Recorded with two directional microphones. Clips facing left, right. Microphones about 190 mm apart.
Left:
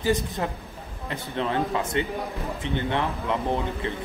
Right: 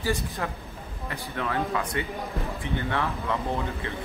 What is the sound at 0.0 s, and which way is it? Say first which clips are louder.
A man's voice: left 4 dB; 20° left (ahead or behind).